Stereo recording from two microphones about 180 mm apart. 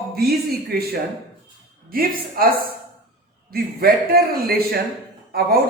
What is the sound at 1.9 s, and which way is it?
A woman's voice, 55° right (ahead or behind).